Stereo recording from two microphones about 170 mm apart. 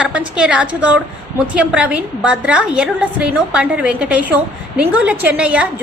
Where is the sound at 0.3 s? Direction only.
5° right (ahead or behind).